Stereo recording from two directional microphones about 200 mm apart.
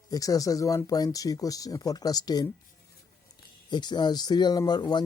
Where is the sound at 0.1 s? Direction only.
15° left (ahead or behind).